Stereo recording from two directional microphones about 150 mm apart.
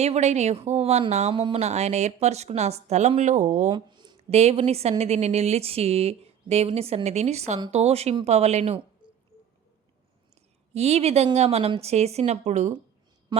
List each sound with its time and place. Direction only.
0.0 s a woman's voice: 50° right (ahead or behind)
1.3 s speech: 30° right (ahead or behind)
1.5 s a woman's voice: 50° right (ahead or behind)
3.7 s a sound: 30° right (ahead or behind)
4.3 s a woman's voice: 45° right (ahead or behind)
10.8 s a woman's voice: 45° right (ahead or behind)